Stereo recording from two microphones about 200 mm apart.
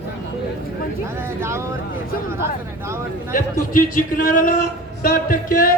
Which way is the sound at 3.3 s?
45° left (ahead or behind).